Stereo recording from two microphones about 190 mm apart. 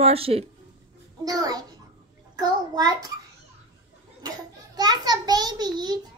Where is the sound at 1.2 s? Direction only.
20° right (ahead or behind).